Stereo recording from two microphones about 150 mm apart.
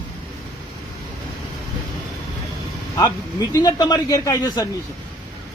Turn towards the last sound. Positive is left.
turn(degrees=20)  # may be behind; listen again after turning